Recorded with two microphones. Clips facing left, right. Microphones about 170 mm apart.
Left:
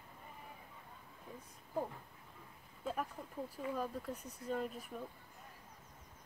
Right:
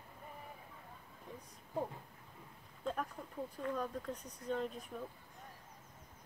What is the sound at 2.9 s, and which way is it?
Speech, 5° left (ahead or behind).